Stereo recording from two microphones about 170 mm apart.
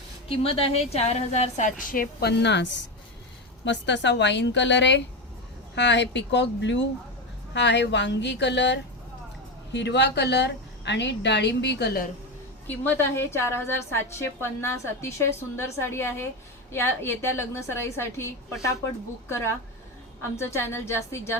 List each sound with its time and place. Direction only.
0.3 s a woman's voice: 35° left (ahead or behind)
1.9 s a woman's voice: 65° left (ahead or behind); by 12.0 s 85° left
12.6 s a woman's voice: 10° left (ahead or behind)
20.3 s a woman's voice: 15° left (ahead or behind)